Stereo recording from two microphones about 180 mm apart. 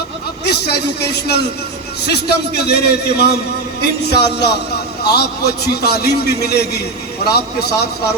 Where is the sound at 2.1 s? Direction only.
65° left (ahead or behind).